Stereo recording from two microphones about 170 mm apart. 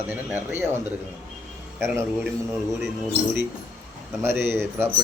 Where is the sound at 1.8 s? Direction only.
15° right (ahead or behind).